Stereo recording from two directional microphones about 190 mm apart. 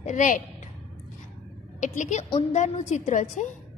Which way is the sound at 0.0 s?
40° left (ahead or behind).